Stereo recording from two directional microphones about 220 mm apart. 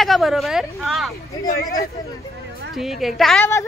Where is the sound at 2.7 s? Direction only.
Centre (ahead or behind).